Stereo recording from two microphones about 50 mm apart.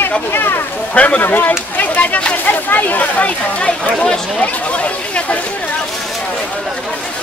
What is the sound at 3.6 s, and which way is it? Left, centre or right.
Speech, centre.